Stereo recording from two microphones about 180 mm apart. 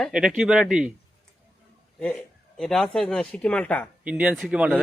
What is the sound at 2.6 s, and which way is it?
Speech, centre (ahead or behind).